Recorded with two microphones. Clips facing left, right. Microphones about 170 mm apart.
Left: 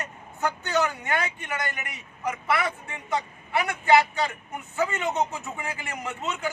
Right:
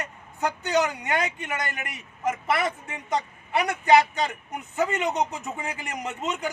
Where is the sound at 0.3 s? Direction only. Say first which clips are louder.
Right 2 dB; 15° right (ahead or behind).